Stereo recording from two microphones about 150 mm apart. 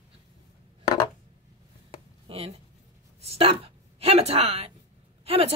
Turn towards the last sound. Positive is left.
turn(degrees=-45)  # may be behind; listen again after turning